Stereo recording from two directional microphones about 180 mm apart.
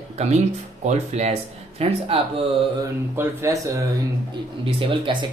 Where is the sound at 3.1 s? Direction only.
15° right (ahead or behind).